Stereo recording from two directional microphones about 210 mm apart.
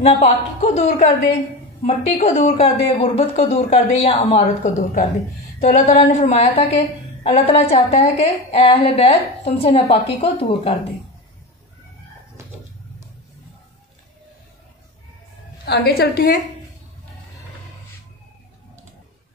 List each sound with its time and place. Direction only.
0.0 s a woman's voice: 30° left (ahead or behind)
15.6 s a woman's voice: 45° left (ahead or behind)